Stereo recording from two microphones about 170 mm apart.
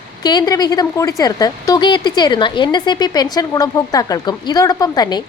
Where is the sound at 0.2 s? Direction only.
25° left (ahead or behind).